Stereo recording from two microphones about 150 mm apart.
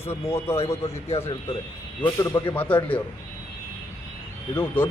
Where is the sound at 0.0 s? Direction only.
15° left (ahead or behind).